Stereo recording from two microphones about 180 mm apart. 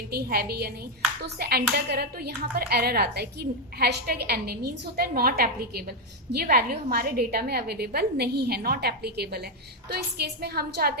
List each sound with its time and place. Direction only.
0.1 s a woman's voice: 60° right (ahead or behind)